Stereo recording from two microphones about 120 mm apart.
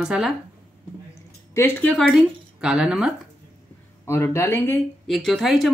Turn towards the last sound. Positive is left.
turn(degrees=0)  # may be behind; listen again after turning